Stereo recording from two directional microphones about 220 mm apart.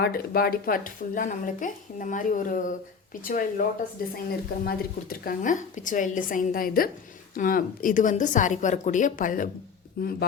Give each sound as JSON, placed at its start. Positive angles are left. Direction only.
{"t": 0.0, "sound": "a woman's voice", "side_deg": 45}